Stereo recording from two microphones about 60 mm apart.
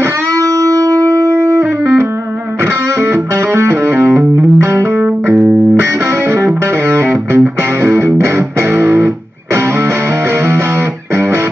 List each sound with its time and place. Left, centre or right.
0.4 s music: right
2.6 s music: right
7.0 s music: right